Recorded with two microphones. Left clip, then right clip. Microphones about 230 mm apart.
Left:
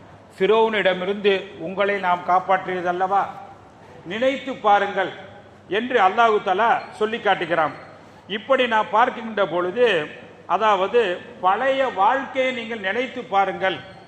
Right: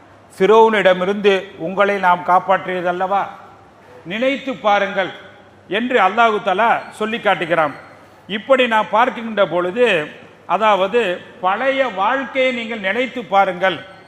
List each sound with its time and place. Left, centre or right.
0.3 s a man's voice: right